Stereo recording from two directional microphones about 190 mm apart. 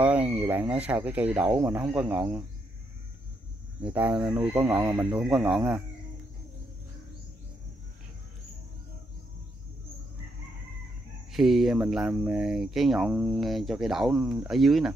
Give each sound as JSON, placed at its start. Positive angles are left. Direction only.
{"t": 0.0, "sound": "a sound", "side_deg": -5}
{"t": 0.4, "sound": "speech", "side_deg": -10}
{"t": 3.8, "sound": "speech", "side_deg": -10}
{"t": 5.1, "sound": "speech", "side_deg": -5}
{"t": 11.3, "sound": "speech", "side_deg": 0}